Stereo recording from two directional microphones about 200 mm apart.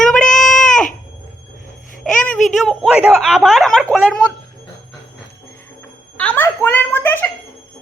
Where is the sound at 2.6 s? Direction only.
Centre (ahead or behind).